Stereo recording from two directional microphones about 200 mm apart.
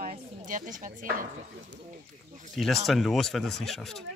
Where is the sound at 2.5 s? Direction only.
Centre (ahead or behind).